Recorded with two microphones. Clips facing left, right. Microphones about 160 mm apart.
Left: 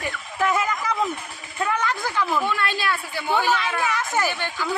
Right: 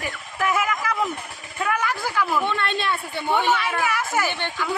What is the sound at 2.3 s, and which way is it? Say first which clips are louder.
Speech: even; 5° left (ahead or behind).